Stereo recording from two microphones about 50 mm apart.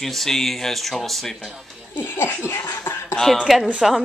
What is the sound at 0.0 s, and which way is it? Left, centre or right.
Speech, centre.